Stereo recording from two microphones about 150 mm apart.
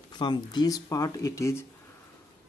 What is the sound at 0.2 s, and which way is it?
Speech, 30° left (ahead or behind).